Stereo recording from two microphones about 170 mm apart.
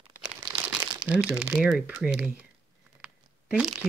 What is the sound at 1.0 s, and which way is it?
Speech, 90° right.